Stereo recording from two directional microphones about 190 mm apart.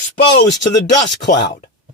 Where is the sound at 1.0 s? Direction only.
65° left (ahead or behind).